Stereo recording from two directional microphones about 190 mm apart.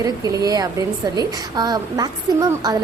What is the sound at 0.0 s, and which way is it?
A woman's voice, 20° right (ahead or behind).